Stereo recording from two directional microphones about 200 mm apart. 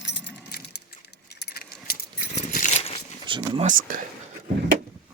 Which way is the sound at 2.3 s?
35° left (ahead or behind).